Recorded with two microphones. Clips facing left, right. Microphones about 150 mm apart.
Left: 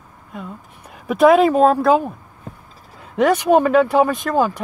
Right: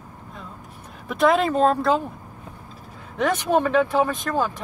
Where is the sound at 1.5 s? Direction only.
10° left (ahead or behind).